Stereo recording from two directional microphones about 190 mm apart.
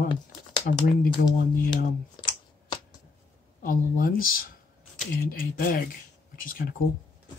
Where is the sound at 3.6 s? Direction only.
50° left (ahead or behind).